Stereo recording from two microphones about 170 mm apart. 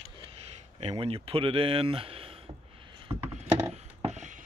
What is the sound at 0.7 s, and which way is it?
Speech, 35° right (ahead or behind).